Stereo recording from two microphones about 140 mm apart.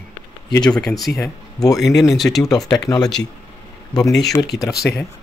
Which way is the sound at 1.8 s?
Centre (ahead or behind).